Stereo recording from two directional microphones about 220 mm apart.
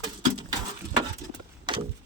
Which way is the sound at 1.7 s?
20° right (ahead or behind).